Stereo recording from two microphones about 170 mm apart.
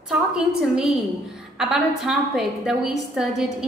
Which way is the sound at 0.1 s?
5° right (ahead or behind).